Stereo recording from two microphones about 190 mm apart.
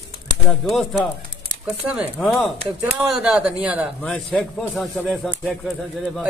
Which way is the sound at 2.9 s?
5° right (ahead or behind).